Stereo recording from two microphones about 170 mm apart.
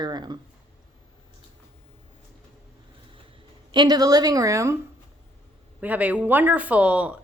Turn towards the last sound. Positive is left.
turn(degrees=-10)  # may be behind; listen again after turning